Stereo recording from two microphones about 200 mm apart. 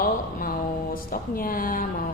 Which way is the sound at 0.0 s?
45° left (ahead or behind).